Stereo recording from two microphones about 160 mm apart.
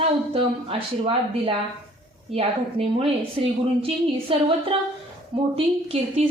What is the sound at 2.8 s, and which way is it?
A woman's voice, 35° right (ahead or behind).